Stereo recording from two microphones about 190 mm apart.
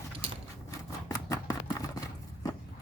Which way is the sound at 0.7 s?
15° left (ahead or behind).